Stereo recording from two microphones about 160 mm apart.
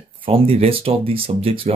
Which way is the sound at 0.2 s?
35° right (ahead or behind).